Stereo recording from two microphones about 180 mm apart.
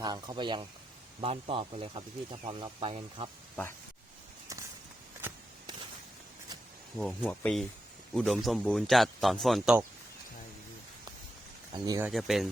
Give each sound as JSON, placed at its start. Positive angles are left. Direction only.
{"t": 0.0, "sound": "speech", "side_deg": -25}
{"t": 6.9, "sound": "a man's voice", "side_deg": 5}
{"t": 11.7, "sound": "speech", "side_deg": -20}
{"t": 12.0, "sound": "a man's voice", "side_deg": 0}